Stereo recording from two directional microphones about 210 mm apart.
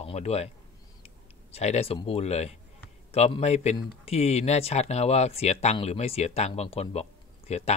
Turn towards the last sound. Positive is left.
turn(degrees=30)  # may be behind; listen again after turning